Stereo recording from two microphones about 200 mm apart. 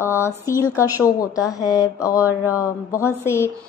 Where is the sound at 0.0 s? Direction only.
15° left (ahead or behind).